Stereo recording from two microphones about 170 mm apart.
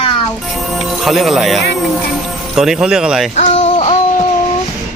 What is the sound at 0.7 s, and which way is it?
Speech, centre (ahead or behind).